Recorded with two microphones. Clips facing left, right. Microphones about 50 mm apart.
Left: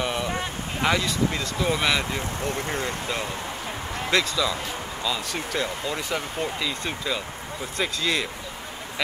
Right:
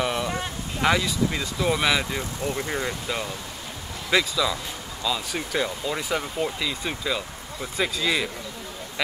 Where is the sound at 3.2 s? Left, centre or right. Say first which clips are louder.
Left 4 dB; left.